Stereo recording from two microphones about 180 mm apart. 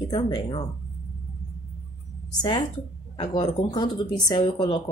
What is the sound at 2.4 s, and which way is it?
Speech, 20° left (ahead or behind).